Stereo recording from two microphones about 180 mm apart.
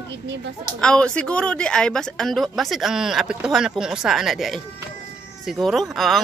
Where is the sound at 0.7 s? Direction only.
5° left (ahead or behind).